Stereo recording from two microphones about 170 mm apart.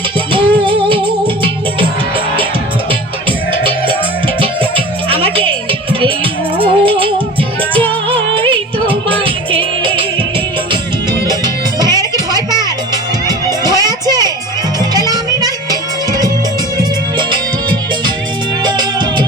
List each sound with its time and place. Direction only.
0.3 s music: 30° right (ahead or behind)
3.6 s music: 30° right (ahead or behind)
6.6 s music: 30° right (ahead or behind)
11.3 s music: 25° right (ahead or behind)
18.6 s music: 25° right (ahead or behind)